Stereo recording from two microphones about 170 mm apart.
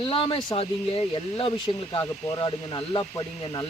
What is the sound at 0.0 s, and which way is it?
Speech, 30° left (ahead or behind).